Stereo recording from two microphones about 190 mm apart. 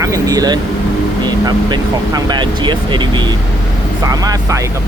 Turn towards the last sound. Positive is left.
turn(degrees=-20)  # may be behind; listen again after turning